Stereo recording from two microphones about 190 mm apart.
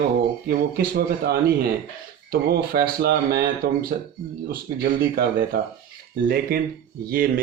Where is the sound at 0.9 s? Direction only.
55° right (ahead or behind).